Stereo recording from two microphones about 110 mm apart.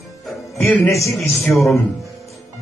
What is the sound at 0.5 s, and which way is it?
Speech, 20° left (ahead or behind).